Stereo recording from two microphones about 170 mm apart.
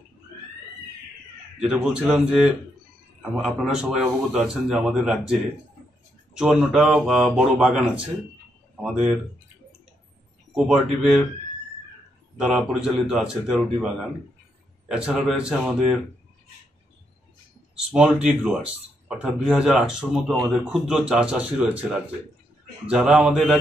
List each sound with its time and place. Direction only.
1.6 s speech: 5° right (ahead or behind)
6.3 s speech: centre (ahead or behind)
10.5 s speech: 5° right (ahead or behind)
12.4 s speech: 5° right (ahead or behind)
17.9 s speech: 5° right (ahead or behind)